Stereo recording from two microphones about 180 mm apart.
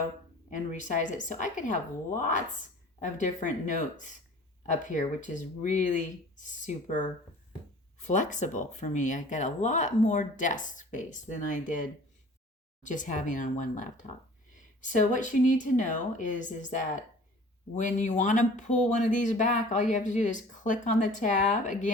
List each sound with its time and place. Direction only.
0.7 s speech: 45° left (ahead or behind)